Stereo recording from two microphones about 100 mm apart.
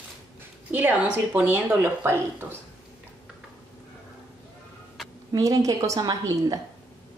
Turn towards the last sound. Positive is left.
turn(degrees=-35)  # may be behind; listen again after turning